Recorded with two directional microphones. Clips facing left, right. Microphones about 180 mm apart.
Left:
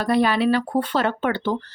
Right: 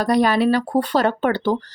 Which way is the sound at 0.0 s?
40° right (ahead or behind).